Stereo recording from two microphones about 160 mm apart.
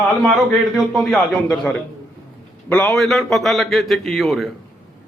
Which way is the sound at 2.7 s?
15° left (ahead or behind).